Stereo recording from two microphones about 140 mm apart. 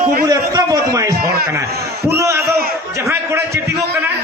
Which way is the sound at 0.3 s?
25° right (ahead or behind).